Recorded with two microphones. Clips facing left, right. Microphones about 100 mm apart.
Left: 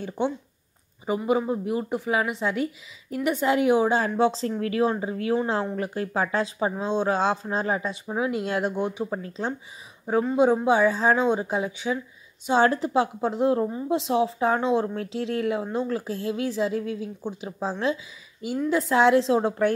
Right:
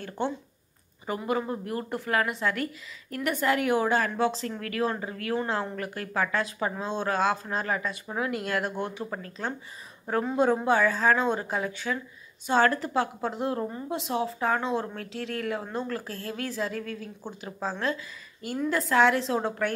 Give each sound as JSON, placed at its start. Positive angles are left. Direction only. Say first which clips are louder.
{"t": 1.0, "sound": "speech", "louder": "left 5 dB", "side_deg": 15}